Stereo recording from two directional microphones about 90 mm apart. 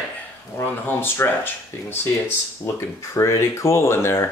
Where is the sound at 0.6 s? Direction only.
25° left (ahead or behind).